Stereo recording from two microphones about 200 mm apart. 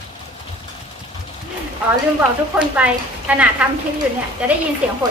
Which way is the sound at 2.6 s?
5° right (ahead or behind).